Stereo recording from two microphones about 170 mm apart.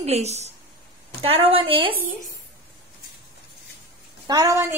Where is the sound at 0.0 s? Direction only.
40° right (ahead or behind).